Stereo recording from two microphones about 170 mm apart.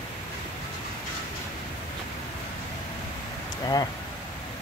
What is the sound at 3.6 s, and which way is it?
Speech, 20° left (ahead or behind).